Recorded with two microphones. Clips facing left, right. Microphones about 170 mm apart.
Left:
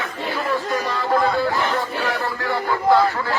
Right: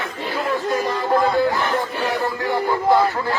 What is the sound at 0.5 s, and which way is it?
Speech, 20° right (ahead or behind).